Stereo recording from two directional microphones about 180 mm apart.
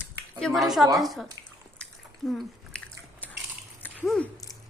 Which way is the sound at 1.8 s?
5° left (ahead or behind).